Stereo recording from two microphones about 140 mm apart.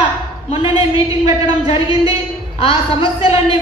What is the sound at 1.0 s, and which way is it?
Speech, 25° right (ahead or behind).